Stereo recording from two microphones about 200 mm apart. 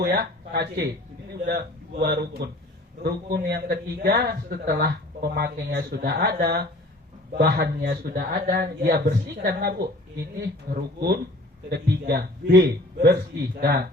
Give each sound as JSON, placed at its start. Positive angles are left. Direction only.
{"t": 0.0, "sound": "a man's voice", "side_deg": -50}
{"t": 13.6, "sound": "speech", "side_deg": -55}